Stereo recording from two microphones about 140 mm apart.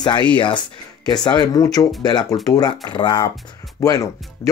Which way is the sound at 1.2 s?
25° left (ahead or behind).